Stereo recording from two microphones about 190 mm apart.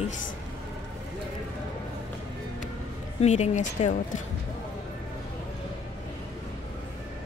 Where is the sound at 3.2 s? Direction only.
35° left (ahead or behind).